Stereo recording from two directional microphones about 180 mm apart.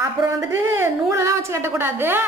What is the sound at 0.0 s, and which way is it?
A woman's voice, 15° right (ahead or behind).